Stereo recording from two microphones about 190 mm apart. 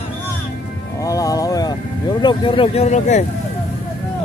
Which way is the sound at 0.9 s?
15° left (ahead or behind).